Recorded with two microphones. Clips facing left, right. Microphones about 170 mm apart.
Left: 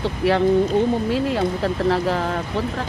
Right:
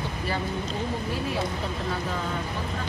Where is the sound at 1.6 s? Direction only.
80° left.